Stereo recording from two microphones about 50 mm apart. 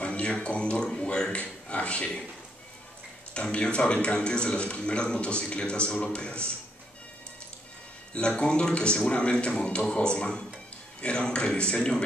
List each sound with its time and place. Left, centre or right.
0.0 s speech: left
3.3 s speech: centre
8.1 s speech: centre